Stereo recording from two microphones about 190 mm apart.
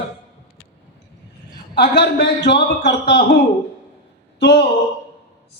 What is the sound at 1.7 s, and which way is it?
A man's voice, 60° left (ahead or behind).